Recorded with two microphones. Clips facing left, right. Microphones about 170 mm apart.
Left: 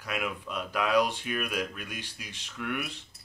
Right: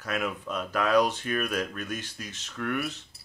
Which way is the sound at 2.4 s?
45° right (ahead or behind).